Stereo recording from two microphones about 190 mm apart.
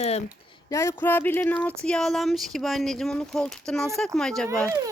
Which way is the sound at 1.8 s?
5° left (ahead or behind).